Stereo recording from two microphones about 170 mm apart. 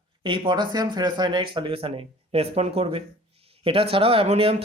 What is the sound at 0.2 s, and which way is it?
Speech, 30° right (ahead or behind).